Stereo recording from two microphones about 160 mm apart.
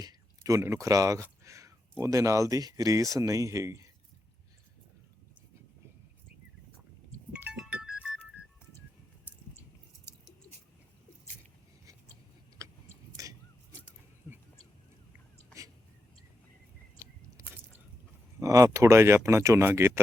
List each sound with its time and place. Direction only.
0.0 s speech: 20° right (ahead or behind)
7.3 s music: 5° right (ahead or behind)
10.1 s bird: 15° left (ahead or behind)
13.2 s a sound: 20° right (ahead or behind)
17.4 s drip: 20° right (ahead or behind)
18.3 s speech: 20° right (ahead or behind)